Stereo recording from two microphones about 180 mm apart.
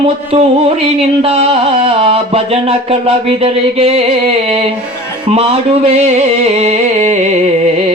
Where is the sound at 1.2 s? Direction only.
35° right (ahead or behind).